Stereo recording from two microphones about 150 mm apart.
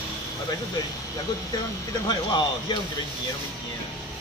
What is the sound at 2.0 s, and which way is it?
Speech, 30° left (ahead or behind).